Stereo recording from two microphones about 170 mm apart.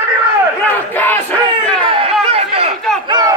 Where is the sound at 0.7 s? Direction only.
10° left (ahead or behind).